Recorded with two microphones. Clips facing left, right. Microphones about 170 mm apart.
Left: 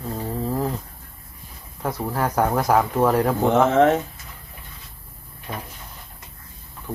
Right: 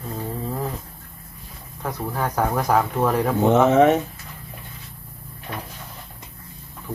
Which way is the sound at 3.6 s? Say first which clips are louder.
Right 2 dB; 20° right (ahead or behind).